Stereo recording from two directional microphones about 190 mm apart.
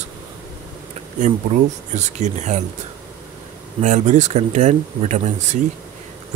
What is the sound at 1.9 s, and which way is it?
Speech, 40° right (ahead or behind).